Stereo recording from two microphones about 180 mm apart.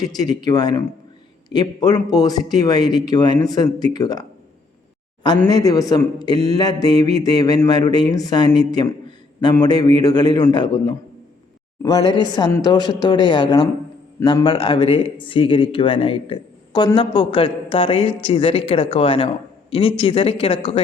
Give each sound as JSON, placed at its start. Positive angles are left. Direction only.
{"t": 0.0, "sound": "mantra", "side_deg": 20}
{"t": 1.5, "sound": "a man's voice", "side_deg": 20}
{"t": 2.0, "sound": "mantra", "side_deg": 20}
{"t": 5.5, "sound": "mantra", "side_deg": 20}
{"t": 18.3, "sound": "speech", "side_deg": 30}
{"t": 19.7, "sound": "mantra", "side_deg": 30}